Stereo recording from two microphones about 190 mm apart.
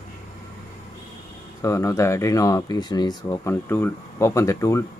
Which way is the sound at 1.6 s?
15° left (ahead or behind).